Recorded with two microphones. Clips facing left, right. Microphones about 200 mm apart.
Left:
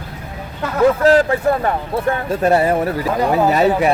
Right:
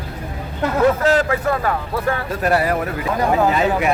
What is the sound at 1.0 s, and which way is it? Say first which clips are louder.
Speech: left 4 dB; 30° left (ahead or behind).